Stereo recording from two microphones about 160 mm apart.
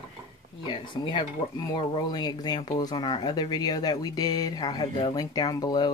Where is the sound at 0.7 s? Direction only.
30° left (ahead or behind).